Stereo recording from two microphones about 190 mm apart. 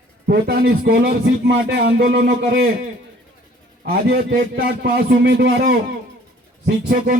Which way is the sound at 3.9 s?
55° right (ahead or behind).